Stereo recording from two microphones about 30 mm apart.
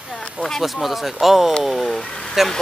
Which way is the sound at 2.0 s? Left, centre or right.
Left.